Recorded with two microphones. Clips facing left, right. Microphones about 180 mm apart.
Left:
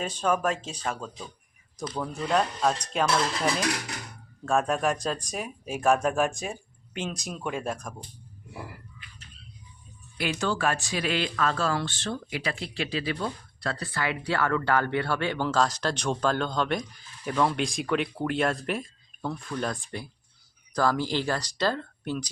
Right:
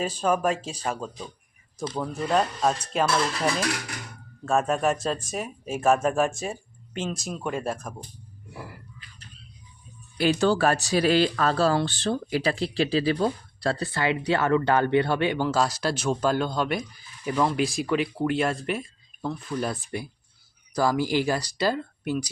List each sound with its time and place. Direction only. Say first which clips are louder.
0.0 s speech: right 2 dB; 5° right (ahead or behind)
2.3 s speech: right 1 dB; 5° right (ahead or behind)
10.2 s speech: right 7 dB; 35° right (ahead or behind); by 22.3 s 10° right (ahead or behind)